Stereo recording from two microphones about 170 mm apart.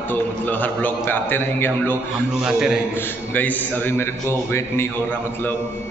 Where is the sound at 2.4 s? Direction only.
5° right (ahead or behind).